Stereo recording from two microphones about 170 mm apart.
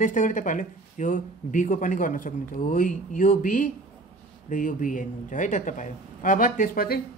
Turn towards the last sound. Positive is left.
turn(degrees=55)  # may be behind; listen again after turning